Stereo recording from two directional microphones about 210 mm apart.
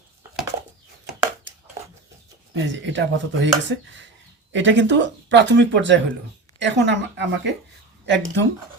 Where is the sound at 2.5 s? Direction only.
60° right (ahead or behind).